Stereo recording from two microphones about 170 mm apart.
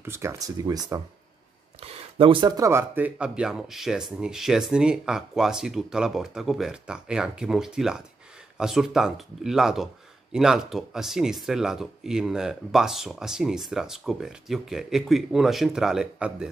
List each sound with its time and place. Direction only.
0.0 s speech: 15° right (ahead or behind)